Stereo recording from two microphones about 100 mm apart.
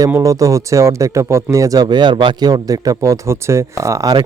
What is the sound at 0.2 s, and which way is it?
Speech, 35° right (ahead or behind).